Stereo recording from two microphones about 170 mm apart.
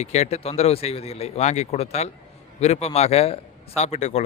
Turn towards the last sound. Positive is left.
turn(degrees=40)  # may be behind; listen again after turning